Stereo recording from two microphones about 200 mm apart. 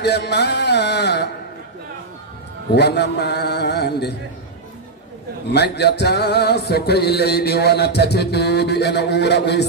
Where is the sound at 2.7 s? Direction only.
55° left (ahead or behind).